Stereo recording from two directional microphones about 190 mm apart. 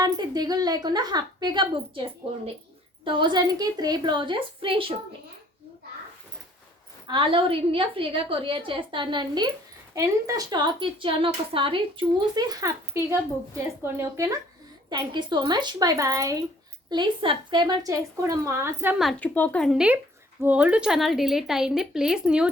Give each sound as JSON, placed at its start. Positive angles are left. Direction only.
{"t": 0.0, "sound": "a woman's voice", "side_deg": -20}
{"t": 7.1, "sound": "a woman's voice", "side_deg": -25}
{"t": 18.9, "sound": "a woman's voice", "side_deg": 5}